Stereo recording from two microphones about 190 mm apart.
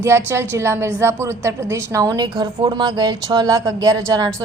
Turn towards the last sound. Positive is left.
turn(degrees=-15)  # may be behind; listen again after turning